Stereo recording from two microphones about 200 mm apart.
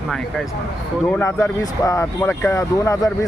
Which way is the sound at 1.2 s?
15° left (ahead or behind).